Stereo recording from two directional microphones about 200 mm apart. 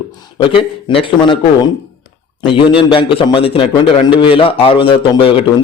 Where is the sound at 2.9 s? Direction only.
25° left (ahead or behind).